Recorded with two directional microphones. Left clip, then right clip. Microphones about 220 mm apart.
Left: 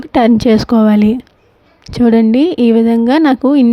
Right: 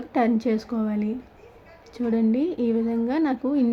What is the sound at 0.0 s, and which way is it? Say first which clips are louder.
Speech: left 12 dB; 40° left (ahead or behind).